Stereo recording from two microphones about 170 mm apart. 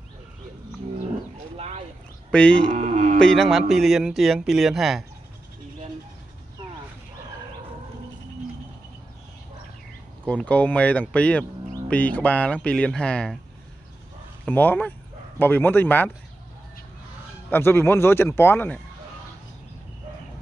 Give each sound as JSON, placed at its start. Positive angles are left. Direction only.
{"t": 1.6, "sound": "a sound", "side_deg": -40}
{"t": 2.3, "sound": "speech", "side_deg": 5}
{"t": 2.7, "sound": "music", "side_deg": -50}
{"t": 3.2, "sound": "a man's voice", "side_deg": 5}
{"t": 10.2, "sound": "speech", "side_deg": 5}
{"t": 14.4, "sound": "speech", "side_deg": 10}
{"t": 17.5, "sound": "speech", "side_deg": 15}